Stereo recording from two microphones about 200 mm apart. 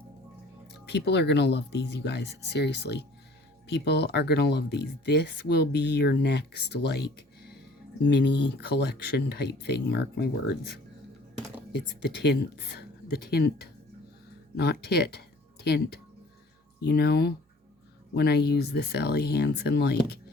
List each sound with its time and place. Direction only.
0.9 s speech: 60° left (ahead or behind)
8.1 s speech: 60° left (ahead or behind)
12.2 s a woman's voice: 55° left (ahead or behind)